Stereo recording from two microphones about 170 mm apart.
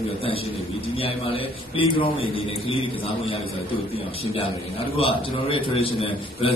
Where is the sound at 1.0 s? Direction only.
35° left (ahead or behind).